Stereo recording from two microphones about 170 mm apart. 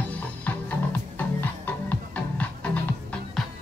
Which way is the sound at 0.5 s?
10° left (ahead or behind).